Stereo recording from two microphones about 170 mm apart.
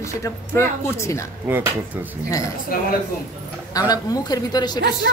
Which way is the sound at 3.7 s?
20° left (ahead or behind).